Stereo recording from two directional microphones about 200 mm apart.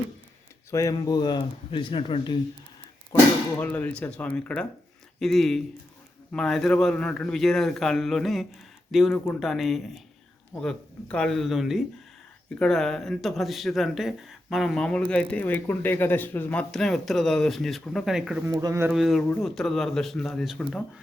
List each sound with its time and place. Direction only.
0.7 s speech: 15° left (ahead or behind)
3.6 s speech: 10° left (ahead or behind)
18.5 s speech: 15° right (ahead or behind)
18.9 s speech: centre (ahead or behind)